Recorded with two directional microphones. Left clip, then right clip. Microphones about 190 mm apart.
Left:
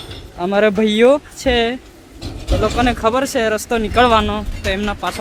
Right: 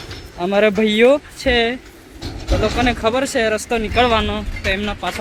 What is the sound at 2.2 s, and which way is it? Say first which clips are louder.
Vehicle: even; 30° left (ahead or behind).